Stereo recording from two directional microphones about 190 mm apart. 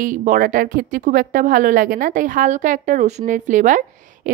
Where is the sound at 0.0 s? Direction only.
45° right (ahead or behind).